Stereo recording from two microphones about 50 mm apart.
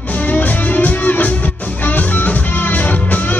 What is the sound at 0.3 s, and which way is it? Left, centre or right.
Music, left.